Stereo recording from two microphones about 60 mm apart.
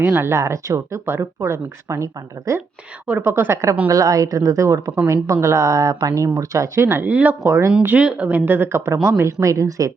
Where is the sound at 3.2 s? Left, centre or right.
Right.